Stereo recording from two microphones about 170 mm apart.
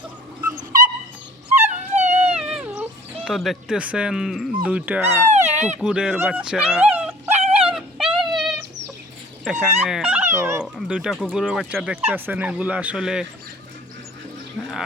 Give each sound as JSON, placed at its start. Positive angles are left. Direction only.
{"t": 0.4, "sound": "dog", "side_deg": -50}
{"t": 2.4, "sound": "cat", "side_deg": -5}
{"t": 3.2, "sound": "speech", "side_deg": 0}
{"t": 5.3, "sound": "a sound", "side_deg": -40}
{"t": 5.8, "sound": "speech", "side_deg": -5}
{"t": 7.3, "sound": "dog", "side_deg": -40}
{"t": 7.7, "sound": "dog", "side_deg": -5}
{"t": 8.2, "sound": "a sound", "side_deg": 0}
{"t": 9.4, "sound": "speech", "side_deg": 0}
{"t": 10.6, "sound": "speech", "side_deg": -5}